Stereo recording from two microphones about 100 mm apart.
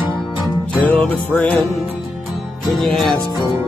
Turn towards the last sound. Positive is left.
turn(degrees=5)  # may be behind; listen again after turning